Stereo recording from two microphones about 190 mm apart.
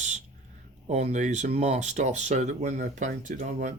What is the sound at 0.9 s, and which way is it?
Speech, 40° right (ahead or behind).